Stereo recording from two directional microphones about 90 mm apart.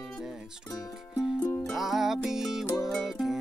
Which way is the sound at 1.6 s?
Centre (ahead or behind).